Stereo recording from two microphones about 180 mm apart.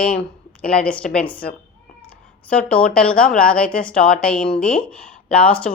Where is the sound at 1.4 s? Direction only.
60° left (ahead or behind).